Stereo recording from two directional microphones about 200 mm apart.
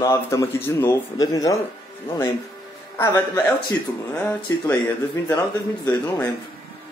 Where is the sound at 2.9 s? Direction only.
15° left (ahead or behind).